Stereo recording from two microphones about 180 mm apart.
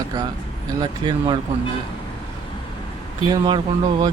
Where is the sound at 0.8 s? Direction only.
25° right (ahead or behind).